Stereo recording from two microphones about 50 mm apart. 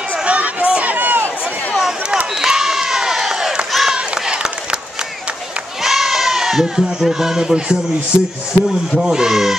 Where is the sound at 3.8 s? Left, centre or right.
Centre.